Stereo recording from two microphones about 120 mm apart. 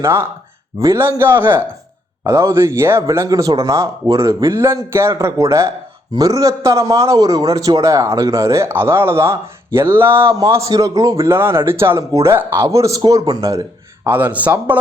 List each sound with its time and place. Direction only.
0.0 s a man's voice: 20° right (ahead or behind)
9.9 s a sound: 20° right (ahead or behind)
10.3 s a man's voice: 25° right (ahead or behind)